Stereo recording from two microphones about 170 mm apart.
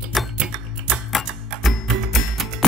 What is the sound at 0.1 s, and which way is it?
Music, centre (ahead or behind).